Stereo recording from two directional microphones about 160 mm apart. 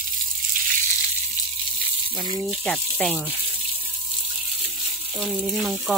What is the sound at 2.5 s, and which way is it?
Speech, 5° left (ahead or behind).